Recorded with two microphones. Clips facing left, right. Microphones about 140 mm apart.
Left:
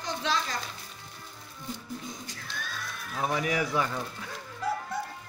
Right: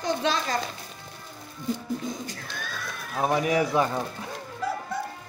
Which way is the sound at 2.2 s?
50° right (ahead or behind).